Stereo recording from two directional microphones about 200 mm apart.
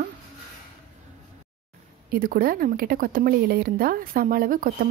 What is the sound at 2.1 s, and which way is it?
Speech, 45° right (ahead or behind).